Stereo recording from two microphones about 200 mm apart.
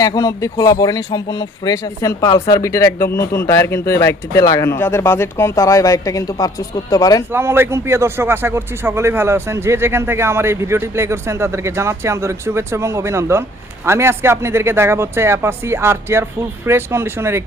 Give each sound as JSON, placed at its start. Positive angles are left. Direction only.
{"t": 0.0, "sound": "speech", "side_deg": 20}
{"t": 7.3, "sound": "a man's voice", "side_deg": -10}